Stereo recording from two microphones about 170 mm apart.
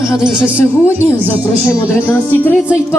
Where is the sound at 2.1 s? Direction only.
10° left (ahead or behind).